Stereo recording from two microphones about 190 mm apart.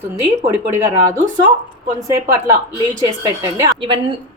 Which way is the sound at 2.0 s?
15° right (ahead or behind).